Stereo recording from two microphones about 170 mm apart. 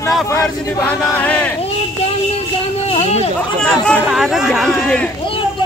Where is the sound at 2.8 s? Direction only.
40° left (ahead or behind).